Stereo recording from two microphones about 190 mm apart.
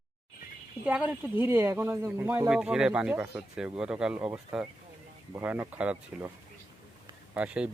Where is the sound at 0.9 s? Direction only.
10° right (ahead or behind).